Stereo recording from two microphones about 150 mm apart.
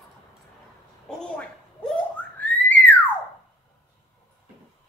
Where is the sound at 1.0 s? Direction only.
5° left (ahead or behind).